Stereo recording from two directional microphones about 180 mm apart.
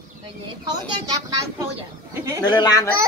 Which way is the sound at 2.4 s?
20° left (ahead or behind).